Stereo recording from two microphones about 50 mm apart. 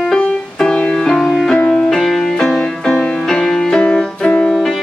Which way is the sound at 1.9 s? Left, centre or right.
Centre.